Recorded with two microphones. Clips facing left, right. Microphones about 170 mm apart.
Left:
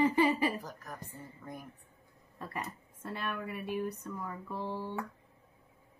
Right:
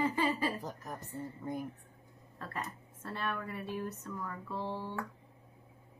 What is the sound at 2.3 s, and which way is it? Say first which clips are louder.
Speech: left 1 dB; 15° left (ahead or behind).